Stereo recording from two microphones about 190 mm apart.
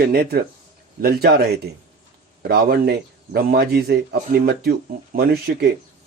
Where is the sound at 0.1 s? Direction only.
55° right (ahead or behind).